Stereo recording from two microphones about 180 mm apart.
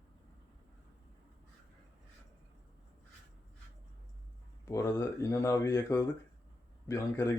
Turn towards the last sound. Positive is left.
turn(degrees=15)  # may be behind; listen again after turning